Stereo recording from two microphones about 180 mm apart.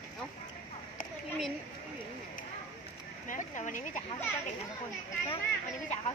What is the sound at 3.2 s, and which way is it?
Speech, 45° left (ahead or behind).